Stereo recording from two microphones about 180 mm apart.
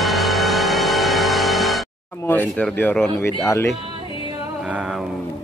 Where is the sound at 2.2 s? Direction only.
10° left (ahead or behind).